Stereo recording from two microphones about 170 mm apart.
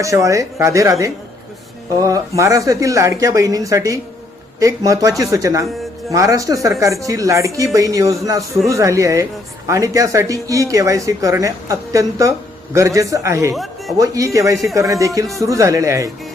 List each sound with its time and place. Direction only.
0.0 s speech: 20° right (ahead or behind)
13.5 s a man's voice: centre (ahead or behind)
14.0 s speech: 20° right (ahead or behind)